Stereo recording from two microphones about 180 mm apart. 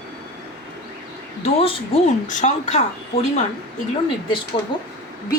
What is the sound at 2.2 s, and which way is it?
Speech, 40° left (ahead or behind).